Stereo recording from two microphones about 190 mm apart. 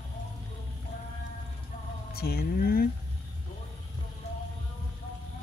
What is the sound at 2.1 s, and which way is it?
Speech, 55° left (ahead or behind).